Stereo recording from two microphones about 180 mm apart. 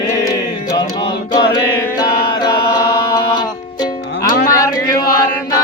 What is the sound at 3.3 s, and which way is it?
Music, 25° left (ahead or behind).